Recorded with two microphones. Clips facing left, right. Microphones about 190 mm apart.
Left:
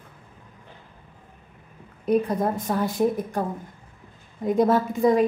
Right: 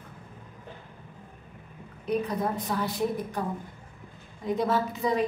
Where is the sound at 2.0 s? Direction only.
45° left (ahead or behind).